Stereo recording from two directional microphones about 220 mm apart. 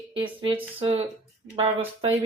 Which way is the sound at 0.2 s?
25° right (ahead or behind).